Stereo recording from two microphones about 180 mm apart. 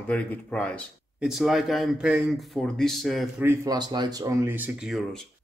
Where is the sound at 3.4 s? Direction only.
20° right (ahead or behind).